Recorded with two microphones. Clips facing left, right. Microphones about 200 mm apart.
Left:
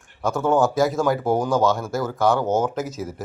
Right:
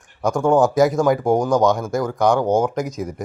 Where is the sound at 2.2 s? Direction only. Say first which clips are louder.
Right 3 dB; 15° right (ahead or behind).